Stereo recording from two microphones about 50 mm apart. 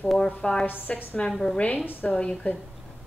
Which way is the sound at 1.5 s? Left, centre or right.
Left.